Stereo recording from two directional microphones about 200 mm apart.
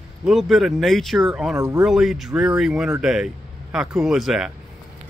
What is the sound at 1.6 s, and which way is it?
Speech, 15° right (ahead or behind).